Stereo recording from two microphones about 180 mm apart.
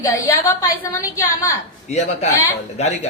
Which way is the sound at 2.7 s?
40° left (ahead or behind).